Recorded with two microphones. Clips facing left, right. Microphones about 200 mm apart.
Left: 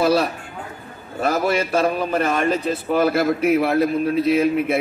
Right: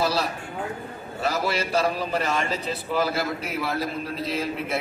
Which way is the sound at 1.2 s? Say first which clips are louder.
Left 6 dB; 55° left (ahead or behind).